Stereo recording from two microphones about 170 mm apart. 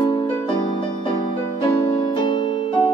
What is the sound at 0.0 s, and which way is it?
Music, 30° left (ahead or behind).